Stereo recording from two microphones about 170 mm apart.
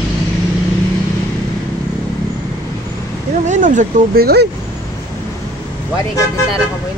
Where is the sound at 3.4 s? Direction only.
45° right (ahead or behind); by 4.5 s 65° right (ahead or behind).